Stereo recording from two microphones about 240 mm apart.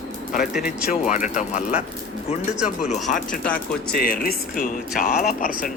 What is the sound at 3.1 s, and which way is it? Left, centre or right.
Speech, left.